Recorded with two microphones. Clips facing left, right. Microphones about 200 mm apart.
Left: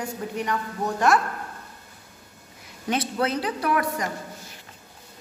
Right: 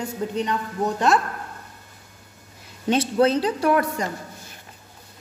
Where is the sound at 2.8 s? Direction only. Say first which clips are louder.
Right 6 dB; 30° right (ahead or behind).